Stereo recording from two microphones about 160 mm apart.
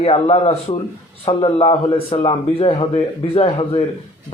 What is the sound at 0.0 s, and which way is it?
A man's voice, 40° left (ahead or behind).